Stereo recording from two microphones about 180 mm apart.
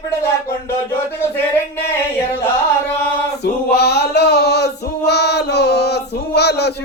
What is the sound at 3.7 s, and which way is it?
Male singing, 65° left (ahead or behind).